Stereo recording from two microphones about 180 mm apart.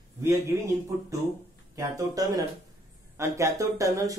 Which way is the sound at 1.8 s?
20° right (ahead or behind).